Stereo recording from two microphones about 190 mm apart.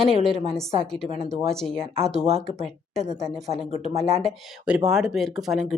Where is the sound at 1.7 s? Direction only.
30° right (ahead or behind).